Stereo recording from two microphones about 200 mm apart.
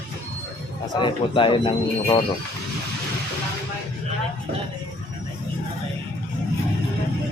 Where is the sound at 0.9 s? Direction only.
25° left (ahead or behind).